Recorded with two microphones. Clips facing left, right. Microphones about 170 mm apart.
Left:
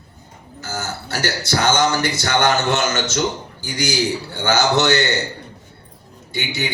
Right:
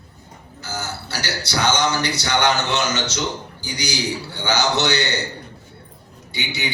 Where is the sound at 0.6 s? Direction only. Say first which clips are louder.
Left 2 dB; 45° left (ahead or behind).